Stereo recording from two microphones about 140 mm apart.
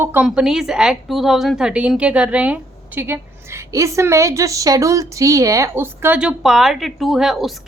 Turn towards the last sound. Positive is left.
turn(degrees=0)  # may be behind; listen again after turning